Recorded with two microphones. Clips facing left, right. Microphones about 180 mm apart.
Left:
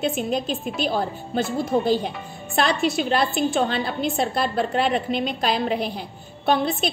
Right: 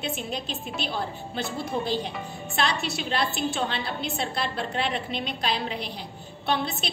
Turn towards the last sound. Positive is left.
turn(degrees=50)  # may be behind; listen again after turning